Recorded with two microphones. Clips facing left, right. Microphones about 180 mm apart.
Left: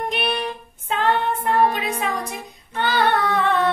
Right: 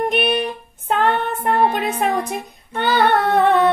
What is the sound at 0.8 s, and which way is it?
Music, 55° right (ahead or behind).